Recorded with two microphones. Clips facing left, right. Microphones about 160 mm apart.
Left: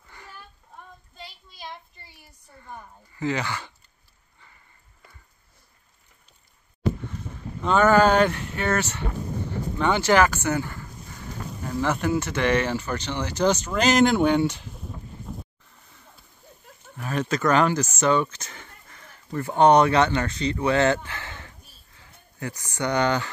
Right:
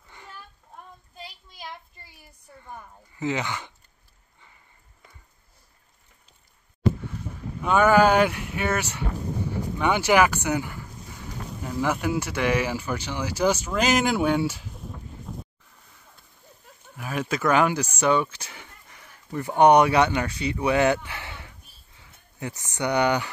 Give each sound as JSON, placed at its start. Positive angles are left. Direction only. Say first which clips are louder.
{"t": 0.1, "sound": "a sound", "louder": "even", "side_deg": -20}
{"t": 3.2, "sound": "speech", "louder": "left 1 dB", "side_deg": -20}
{"t": 7.3, "sound": "speech", "louder": "even", "side_deg": -10}
{"t": 16.9, "sound": "speech", "louder": "left 2 dB", "side_deg": -10}